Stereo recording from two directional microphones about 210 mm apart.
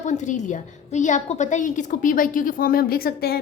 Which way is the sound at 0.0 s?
35° left (ahead or behind).